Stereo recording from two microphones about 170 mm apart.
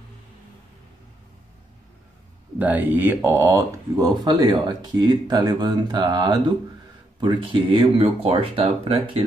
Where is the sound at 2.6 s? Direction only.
10° right (ahead or behind).